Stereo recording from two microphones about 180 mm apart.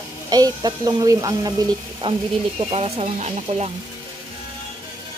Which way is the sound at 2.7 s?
35° right (ahead or behind).